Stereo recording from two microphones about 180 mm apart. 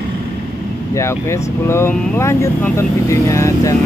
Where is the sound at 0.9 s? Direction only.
15° left (ahead or behind).